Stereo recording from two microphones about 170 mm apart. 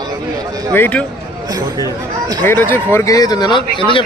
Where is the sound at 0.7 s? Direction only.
10° left (ahead or behind).